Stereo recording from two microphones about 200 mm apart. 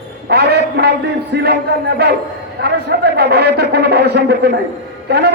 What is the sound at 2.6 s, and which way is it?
A man's voice, 55° right (ahead or behind).